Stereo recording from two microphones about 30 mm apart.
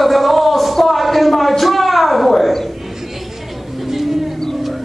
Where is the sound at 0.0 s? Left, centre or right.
Centre.